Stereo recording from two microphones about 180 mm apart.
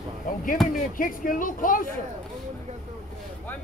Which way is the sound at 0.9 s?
50° left (ahead or behind).